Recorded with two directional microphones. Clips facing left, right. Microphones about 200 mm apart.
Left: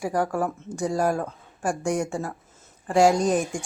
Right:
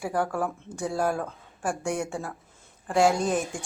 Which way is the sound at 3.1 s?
40° left (ahead or behind).